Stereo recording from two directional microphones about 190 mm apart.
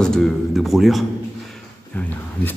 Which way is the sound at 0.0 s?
5° left (ahead or behind).